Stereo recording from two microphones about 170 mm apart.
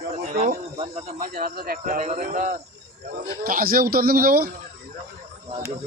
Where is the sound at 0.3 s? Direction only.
45° right (ahead or behind).